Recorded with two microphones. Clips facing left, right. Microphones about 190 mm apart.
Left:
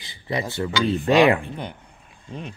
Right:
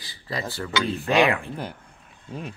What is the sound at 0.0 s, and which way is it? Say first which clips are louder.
Speech: left 4 dB; 20° left (ahead or behind).